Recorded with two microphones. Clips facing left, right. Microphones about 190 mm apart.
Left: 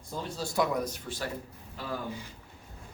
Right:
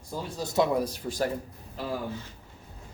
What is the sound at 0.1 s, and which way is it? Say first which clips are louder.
Speech: right 2 dB; 10° right (ahead or behind).